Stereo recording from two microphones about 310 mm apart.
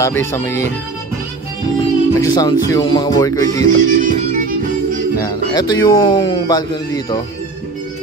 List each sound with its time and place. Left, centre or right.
0.0 s speech: centre
1.8 s speech: centre
3.7 s music: right
5.2 s speech: centre